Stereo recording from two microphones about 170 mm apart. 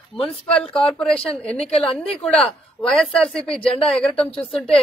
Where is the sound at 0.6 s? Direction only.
30° left (ahead or behind).